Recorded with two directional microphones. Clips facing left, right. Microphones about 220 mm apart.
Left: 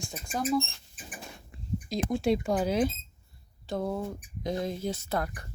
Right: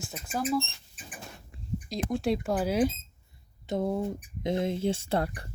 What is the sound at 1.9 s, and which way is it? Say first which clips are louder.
Speech: left 2 dB; centre (ahead or behind).